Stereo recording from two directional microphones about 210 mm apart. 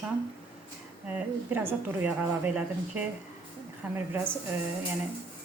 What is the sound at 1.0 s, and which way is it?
A woman's voice, 5° right (ahead or behind).